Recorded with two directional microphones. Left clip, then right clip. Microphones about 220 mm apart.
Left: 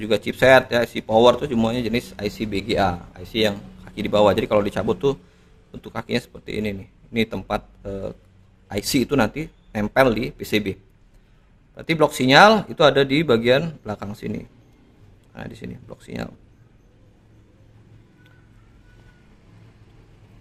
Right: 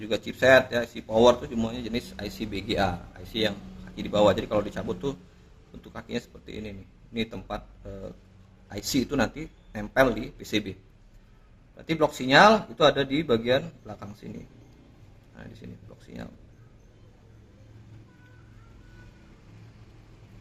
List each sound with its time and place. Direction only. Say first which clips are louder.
0.0 s speech: left 6 dB; 35° left (ahead or behind)
11.8 s speech: left 7 dB; 35° left (ahead or behind)
15.4 s speech: left 10 dB; 35° left (ahead or behind)